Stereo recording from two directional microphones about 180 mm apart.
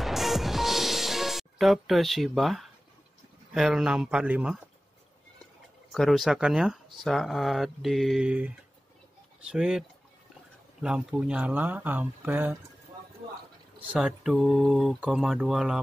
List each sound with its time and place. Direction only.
0.0 s music: centre (ahead or behind)
3.5 s speech: 5° right (ahead or behind)
5.9 s speech: centre (ahead or behind)
13.9 s speech: centre (ahead or behind)